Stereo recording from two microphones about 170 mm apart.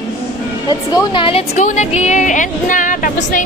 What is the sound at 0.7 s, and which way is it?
Speech, 25° left (ahead or behind).